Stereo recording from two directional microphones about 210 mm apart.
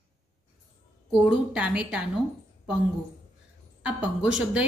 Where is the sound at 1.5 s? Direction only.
5° right (ahead or behind).